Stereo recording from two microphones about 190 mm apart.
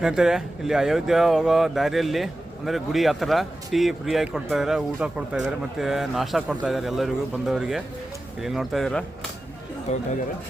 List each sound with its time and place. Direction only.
0.0 s speech: 5° right (ahead or behind)
9.9 s speech: 35° left (ahead or behind)